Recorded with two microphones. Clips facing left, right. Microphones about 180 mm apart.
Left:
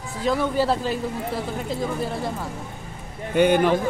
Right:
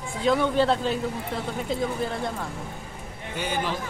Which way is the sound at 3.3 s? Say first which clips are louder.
Left 11 dB; 60° left (ahead or behind).